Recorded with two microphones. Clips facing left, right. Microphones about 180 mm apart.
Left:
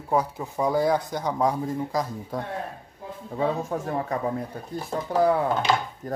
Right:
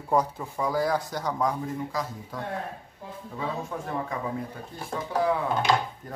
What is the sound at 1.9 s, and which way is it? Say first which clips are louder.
Speech: left 5 dB; 40° left (ahead or behind).